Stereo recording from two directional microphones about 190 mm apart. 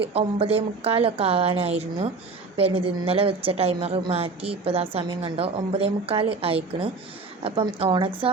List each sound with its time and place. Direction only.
0.1 s a woman's voice: 30° right (ahead or behind)